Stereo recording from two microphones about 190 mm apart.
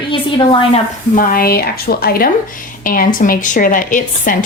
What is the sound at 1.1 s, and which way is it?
A woman's voice, 45° left (ahead or behind).